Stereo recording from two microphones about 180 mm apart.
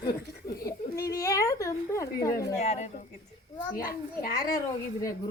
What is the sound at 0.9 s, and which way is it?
Speech, 60° left (ahead or behind).